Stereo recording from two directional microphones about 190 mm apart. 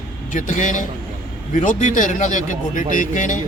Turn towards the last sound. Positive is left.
turn(degrees=40)  # may be behind; listen again after turning